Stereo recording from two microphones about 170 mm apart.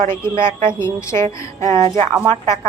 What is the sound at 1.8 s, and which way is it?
Speech, 30° right (ahead or behind).